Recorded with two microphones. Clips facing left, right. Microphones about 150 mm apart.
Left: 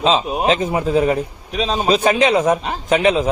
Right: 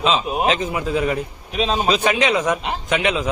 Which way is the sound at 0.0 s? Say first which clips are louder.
Left 2 dB; 35° left (ahead or behind).